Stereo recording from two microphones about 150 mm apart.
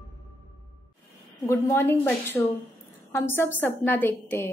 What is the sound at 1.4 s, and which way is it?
A woman's voice, 15° left (ahead or behind).